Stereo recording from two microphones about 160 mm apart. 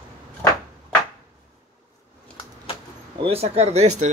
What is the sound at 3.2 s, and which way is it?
Speech, 40° right (ahead or behind).